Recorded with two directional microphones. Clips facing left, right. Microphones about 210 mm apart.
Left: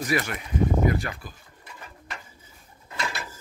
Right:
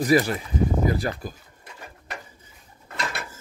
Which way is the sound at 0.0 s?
35° right (ahead or behind).